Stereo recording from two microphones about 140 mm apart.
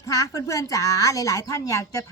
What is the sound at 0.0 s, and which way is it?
A woman's voice, 25° left (ahead or behind).